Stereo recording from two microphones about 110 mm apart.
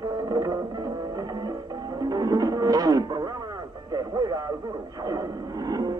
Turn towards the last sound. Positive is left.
turn(degrees=-35)  # may be behind; listen again after turning